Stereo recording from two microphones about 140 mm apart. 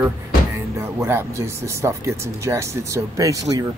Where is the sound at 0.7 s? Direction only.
20° right (ahead or behind).